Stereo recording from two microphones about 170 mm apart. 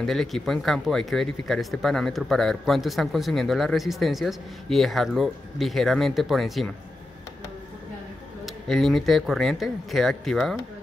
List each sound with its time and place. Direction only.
0.0 s speech: centre (ahead or behind)
8.6 s speech: centre (ahead or behind)